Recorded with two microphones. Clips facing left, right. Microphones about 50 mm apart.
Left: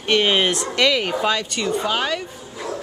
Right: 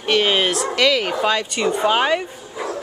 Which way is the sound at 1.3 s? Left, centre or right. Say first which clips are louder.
Right 2 dB; centre.